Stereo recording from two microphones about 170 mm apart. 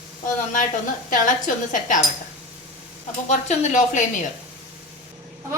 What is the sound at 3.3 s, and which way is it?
Speech, 45° left (ahead or behind).